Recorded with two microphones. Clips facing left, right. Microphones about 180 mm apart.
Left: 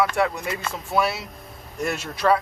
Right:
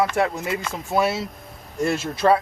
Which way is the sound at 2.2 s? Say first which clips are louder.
Right 2 dB; 25° right (ahead or behind).